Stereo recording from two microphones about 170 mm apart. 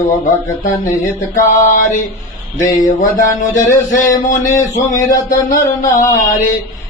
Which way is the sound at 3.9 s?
50° left (ahead or behind).